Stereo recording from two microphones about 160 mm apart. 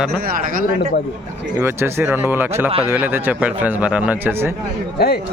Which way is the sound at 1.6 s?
15° right (ahead or behind).